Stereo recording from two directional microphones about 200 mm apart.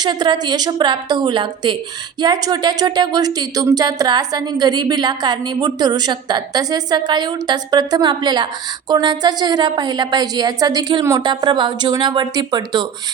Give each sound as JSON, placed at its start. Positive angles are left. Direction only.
{"t": 0.0, "sound": "a woman's voice", "side_deg": -20}